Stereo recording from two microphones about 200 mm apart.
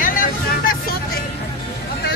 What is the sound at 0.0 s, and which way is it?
Vehicle, 45° left (ahead or behind).